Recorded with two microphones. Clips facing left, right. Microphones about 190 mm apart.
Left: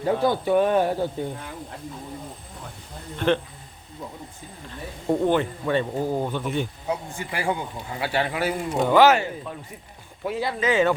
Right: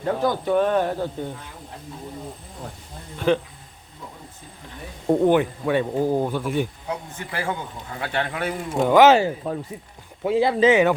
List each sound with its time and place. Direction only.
0.0 s speech: 10° left (ahead or behind)
3.2 s speech: 5° right (ahead or behind)
5.0 s speech: 15° right (ahead or behind)
6.8 s speech: 10° left (ahead or behind)
8.7 s speech: 5° right (ahead or behind)
9.0 s speech: 25° right (ahead or behind)